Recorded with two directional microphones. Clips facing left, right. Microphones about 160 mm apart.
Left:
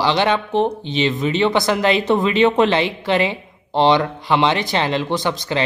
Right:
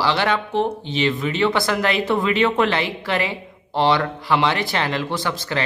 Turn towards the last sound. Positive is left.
turn(degrees=20)  # may be behind; listen again after turning